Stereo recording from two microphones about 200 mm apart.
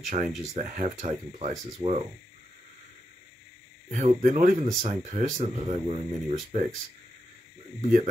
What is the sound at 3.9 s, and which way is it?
Speech, 35° right (ahead or behind).